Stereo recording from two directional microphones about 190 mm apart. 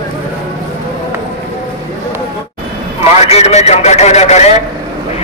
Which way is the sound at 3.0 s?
35° left (ahead or behind).